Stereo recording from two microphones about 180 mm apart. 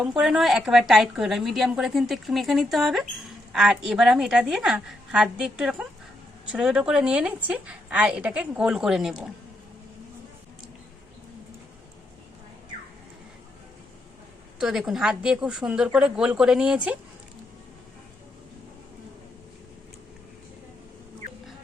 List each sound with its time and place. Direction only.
0.0 s a woman's voice: 5° right (ahead or behind)
14.6 s a woman's voice: centre (ahead or behind)